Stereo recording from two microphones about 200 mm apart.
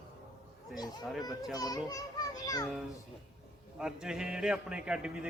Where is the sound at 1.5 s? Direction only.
20° left (ahead or behind).